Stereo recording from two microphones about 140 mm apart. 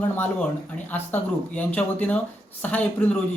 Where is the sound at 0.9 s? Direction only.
15° left (ahead or behind).